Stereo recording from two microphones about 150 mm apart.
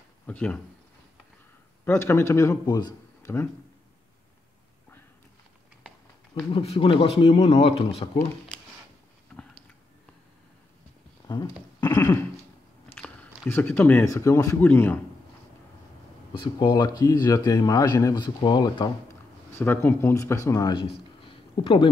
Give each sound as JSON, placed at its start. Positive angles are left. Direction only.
{"t": 0.3, "sound": "speech", "side_deg": 10}
{"t": 1.9, "sound": "speech", "side_deg": 15}
{"t": 6.5, "sound": "speech", "side_deg": 40}
{"t": 11.2, "sound": "speech", "side_deg": 30}
{"t": 12.9, "sound": "speech", "side_deg": 10}
{"t": 16.3, "sound": "speech", "side_deg": 30}
{"t": 19.6, "sound": "speech", "side_deg": 15}